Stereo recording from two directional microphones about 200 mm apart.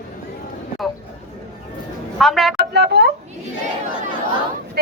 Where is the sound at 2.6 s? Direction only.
55° right (ahead or behind).